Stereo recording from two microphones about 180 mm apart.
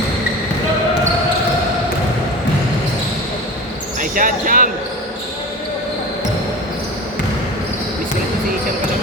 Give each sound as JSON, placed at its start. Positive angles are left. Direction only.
{"t": 4.0, "sound": "basketball bounce", "side_deg": -50}